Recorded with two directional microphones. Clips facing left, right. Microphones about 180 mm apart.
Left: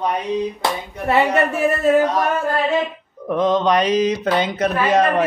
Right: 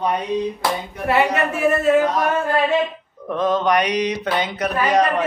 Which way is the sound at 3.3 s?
20° left (ahead or behind).